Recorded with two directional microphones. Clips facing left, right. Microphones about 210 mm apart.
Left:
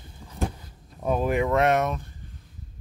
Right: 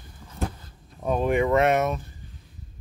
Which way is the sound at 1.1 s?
Centre (ahead or behind).